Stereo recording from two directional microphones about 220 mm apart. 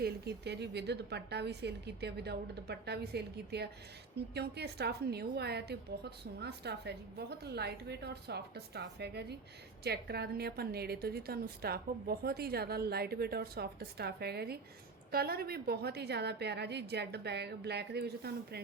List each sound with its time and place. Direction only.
0.0 s a woman's voice: 50° right (ahead or behind)